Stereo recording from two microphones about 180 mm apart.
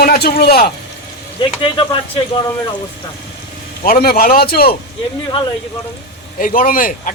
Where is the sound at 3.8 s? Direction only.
55° left (ahead or behind).